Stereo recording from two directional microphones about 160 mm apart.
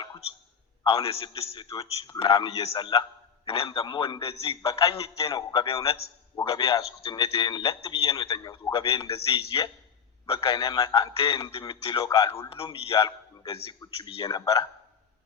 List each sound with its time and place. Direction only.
0.9 s a man's voice: 35° left (ahead or behind)